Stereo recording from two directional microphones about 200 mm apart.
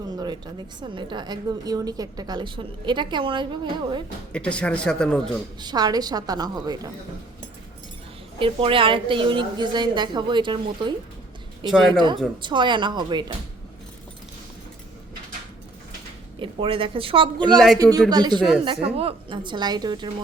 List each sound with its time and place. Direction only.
0.2 s a woman's voice: 20° right (ahead or behind)
4.3 s a man's voice: 5° left (ahead or behind)
5.5 s a woman's voice: 20° right (ahead or behind)
8.4 s a woman's voice: 25° right (ahead or behind)
16.4 s a woman's voice: 25° right (ahead or behind)